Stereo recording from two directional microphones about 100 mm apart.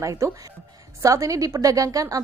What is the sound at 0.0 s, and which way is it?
A woman's voice, 30° right (ahead or behind).